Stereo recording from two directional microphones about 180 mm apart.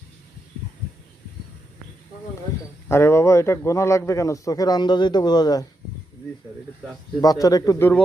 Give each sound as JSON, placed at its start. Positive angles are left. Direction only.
{"t": 2.9, "sound": "a man's voice", "side_deg": 15}
{"t": 7.2, "sound": "a man's voice", "side_deg": 20}